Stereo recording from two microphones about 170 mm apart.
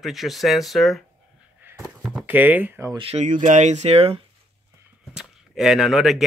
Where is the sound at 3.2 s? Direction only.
50° right (ahead or behind).